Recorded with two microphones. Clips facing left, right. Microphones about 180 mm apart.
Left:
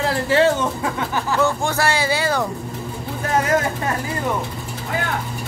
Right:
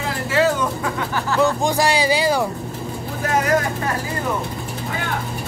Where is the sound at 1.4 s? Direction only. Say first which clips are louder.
Right 3 dB; 15° right (ahead or behind).